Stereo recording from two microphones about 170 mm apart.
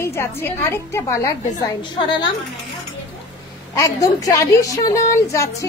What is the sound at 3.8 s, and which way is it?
A woman's voice, 20° left (ahead or behind).